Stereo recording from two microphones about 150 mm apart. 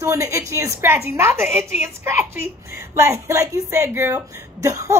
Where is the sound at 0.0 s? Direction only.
20° right (ahead or behind).